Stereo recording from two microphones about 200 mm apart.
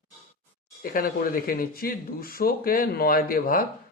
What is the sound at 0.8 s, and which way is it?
Speech, 45° left (ahead or behind).